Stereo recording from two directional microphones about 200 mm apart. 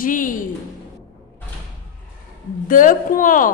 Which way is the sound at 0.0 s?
40° left (ahead or behind).